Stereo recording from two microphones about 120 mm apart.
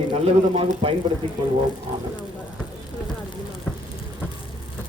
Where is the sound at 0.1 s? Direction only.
55° right (ahead or behind).